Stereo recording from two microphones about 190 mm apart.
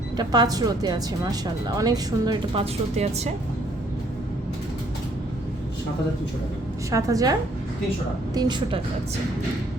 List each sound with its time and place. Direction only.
0.2 s a woman's voice: 20° right (ahead or behind)
6.9 s a woman's voice: 20° right (ahead or behind)